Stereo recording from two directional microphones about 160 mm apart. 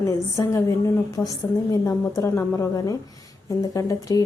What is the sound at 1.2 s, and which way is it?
Speech, 5° left (ahead or behind).